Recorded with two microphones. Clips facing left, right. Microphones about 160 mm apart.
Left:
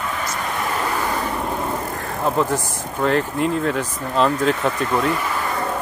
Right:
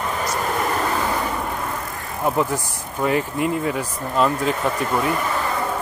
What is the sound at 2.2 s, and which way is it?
Speech, 15° right (ahead or behind).